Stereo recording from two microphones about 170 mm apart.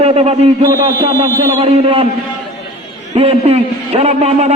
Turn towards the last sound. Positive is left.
turn(degrees=-35)  # may be behind; listen again after turning